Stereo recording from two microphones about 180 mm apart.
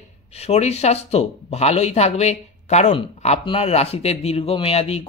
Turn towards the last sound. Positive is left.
turn(degrees=35)  # may be behind; listen again after turning